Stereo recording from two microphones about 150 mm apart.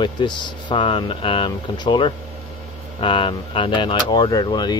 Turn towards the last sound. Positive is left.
turn(degrees=30)  # may be behind; listen again after turning